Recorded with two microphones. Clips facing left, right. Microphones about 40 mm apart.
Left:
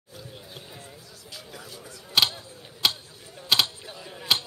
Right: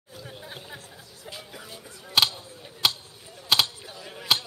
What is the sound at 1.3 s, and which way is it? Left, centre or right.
Music, centre.